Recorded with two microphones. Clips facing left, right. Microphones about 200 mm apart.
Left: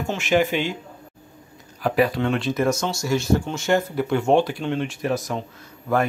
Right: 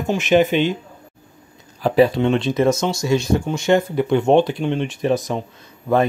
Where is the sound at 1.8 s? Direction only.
25° right (ahead or behind).